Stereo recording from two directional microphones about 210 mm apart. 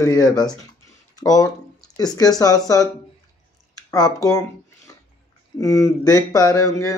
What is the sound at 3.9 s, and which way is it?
Speech, 20° left (ahead or behind).